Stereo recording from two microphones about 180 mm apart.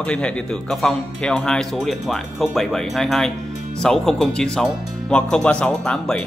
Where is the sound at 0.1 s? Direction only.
5° left (ahead or behind).